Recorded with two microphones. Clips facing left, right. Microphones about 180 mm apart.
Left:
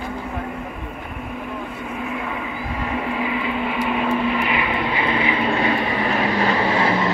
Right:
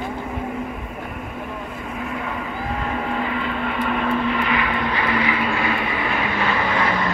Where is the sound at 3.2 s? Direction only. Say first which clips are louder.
Left 1 dB; 5° left (ahead or behind).